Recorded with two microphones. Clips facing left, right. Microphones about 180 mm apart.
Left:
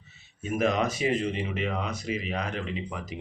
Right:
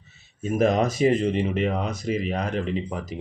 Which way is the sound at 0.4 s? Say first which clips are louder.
Right 5 dB; 40° right (ahead or behind).